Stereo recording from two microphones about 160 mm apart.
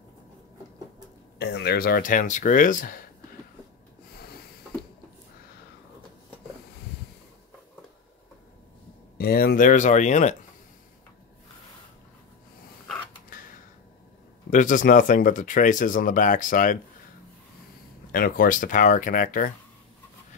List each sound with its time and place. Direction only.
1.4 s speech: 90° left; by 3.0 s 60° left (ahead or behind)
9.2 s speech: 80° left; by 10.3 s 50° left (ahead or behind)
14.5 s speech: 55° left (ahead or behind)
18.1 s speech: 60° left (ahead or behind)